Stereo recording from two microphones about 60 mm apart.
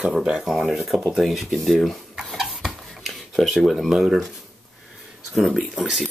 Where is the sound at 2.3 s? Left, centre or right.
Centre.